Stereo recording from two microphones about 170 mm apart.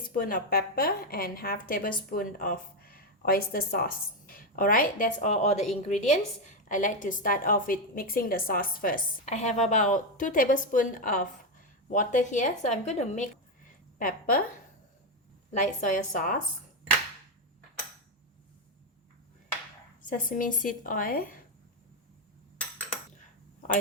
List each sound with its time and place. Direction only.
0.1 s a woman's voice: 55° left (ahead or behind)
9.3 s a woman's voice: 40° left (ahead or behind)
14.0 s a woman's voice: 55° left (ahead or behind)
15.5 s a woman's voice: 50° left (ahead or behind)
20.1 s a woman's voice: 50° left (ahead or behind)